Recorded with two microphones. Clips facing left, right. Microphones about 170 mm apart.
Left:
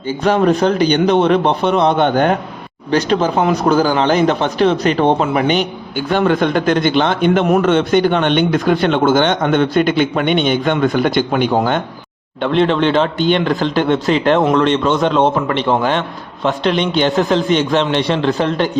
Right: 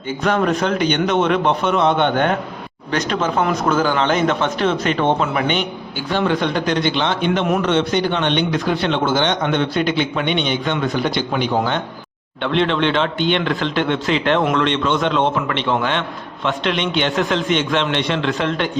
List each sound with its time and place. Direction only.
0.2 s speech: 30° left (ahead or behind)
6.1 s a man's voice: 50° left (ahead or behind)